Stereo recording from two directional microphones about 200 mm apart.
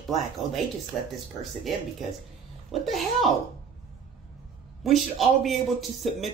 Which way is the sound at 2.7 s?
Centre (ahead or behind).